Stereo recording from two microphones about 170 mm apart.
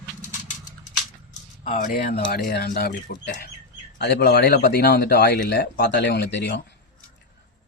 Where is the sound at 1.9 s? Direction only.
55° left (ahead or behind).